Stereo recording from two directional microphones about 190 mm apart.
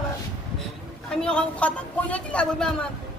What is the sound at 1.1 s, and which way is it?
A man's voice, 5° left (ahead or behind).